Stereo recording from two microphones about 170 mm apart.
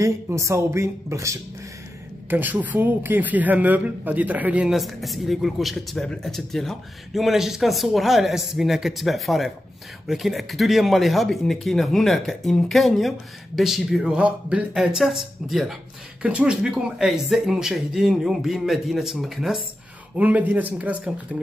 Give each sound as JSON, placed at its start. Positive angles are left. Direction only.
{"t": 0.0, "sound": "a man's voice", "side_deg": -20}